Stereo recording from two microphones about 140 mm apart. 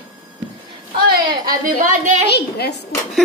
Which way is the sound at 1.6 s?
65° right (ahead or behind).